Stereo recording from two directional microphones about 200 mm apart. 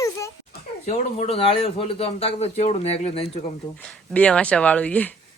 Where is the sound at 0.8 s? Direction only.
30° left (ahead or behind).